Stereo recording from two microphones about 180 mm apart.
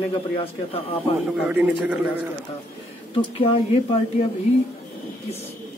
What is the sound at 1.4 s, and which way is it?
Speech, 5° right (ahead or behind).